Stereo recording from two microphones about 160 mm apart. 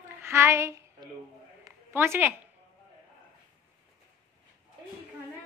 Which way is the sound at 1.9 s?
15° right (ahead or behind).